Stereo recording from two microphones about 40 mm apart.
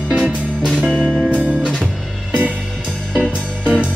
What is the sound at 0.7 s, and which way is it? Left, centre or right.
Music, right.